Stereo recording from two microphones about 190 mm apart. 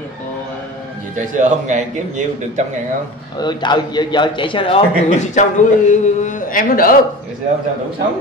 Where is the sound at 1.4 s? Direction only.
40° right (ahead or behind).